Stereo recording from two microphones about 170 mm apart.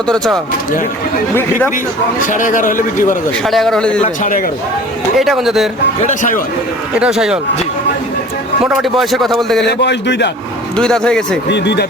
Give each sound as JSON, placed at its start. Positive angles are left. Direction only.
{"t": 1.4, "sound": "speech", "side_deg": 10}
{"t": 2.2, "sound": "a man's voice", "side_deg": 50}
{"t": 3.4, "sound": "speech", "side_deg": 0}
{"t": 4.0, "sound": "a man's voice", "side_deg": 50}
{"t": 5.1, "sound": "speech", "side_deg": 0}
{"t": 6.0, "sound": "a man's voice", "side_deg": 45}
{"t": 7.0, "sound": "speech", "side_deg": -5}
{"t": 8.6, "sound": "speech", "side_deg": -5}
{"t": 9.6, "sound": "speech", "side_deg": 90}
{"t": 10.8, "sound": "speech", "side_deg": 5}
{"t": 11.4, "sound": "speech", "side_deg": 90}